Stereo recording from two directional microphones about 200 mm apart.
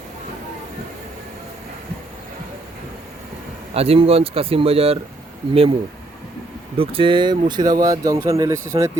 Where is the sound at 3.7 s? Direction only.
30° right (ahead or behind).